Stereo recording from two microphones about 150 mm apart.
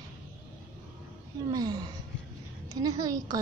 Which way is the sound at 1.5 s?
25° right (ahead or behind).